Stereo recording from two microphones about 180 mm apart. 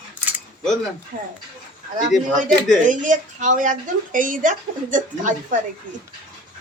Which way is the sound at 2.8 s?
45° right (ahead or behind).